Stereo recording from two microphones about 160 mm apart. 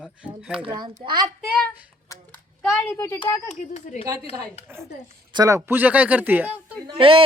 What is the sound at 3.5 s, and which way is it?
Speech, 50° left (ahead or behind).